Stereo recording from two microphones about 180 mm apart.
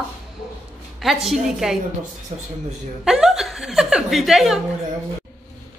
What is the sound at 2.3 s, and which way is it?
Speech, 35° right (ahead or behind).